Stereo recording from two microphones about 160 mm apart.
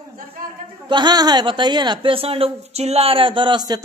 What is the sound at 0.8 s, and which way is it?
A woman's voice, 30° right (ahead or behind).